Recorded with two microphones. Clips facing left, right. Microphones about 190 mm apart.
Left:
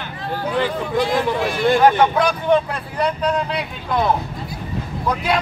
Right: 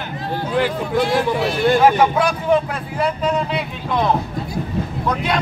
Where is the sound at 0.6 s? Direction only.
5° right (ahead or behind).